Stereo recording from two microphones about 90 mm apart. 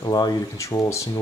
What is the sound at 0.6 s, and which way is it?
Speech, 35° left (ahead or behind).